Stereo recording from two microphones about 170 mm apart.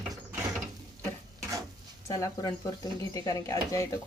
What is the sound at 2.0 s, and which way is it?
Speech, 20° left (ahead or behind).